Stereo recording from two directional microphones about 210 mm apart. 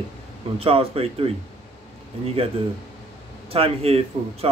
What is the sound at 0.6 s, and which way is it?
Speech, 25° right (ahead or behind).